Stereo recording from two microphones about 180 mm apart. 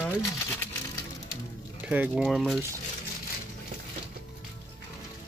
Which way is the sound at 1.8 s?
5° right (ahead or behind).